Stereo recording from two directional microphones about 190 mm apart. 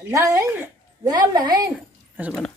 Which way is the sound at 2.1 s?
10° right (ahead or behind).